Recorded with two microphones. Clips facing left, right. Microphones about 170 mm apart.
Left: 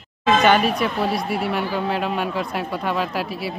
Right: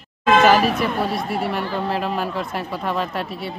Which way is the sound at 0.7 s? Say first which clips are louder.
Even; centre (ahead or behind).